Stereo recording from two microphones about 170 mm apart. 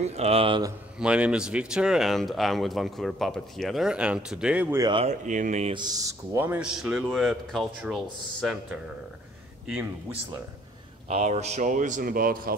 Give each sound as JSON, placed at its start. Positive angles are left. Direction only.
{"t": 0.0, "sound": "a man's voice", "side_deg": -40}
{"t": 0.9, "sound": "speech", "side_deg": -5}
{"t": 4.8, "sound": "a man's voice", "side_deg": -30}
{"t": 5.2, "sound": "speech", "side_deg": -45}
{"t": 5.8, "sound": "speech", "side_deg": -20}
{"t": 11.1, "sound": "speech", "side_deg": -40}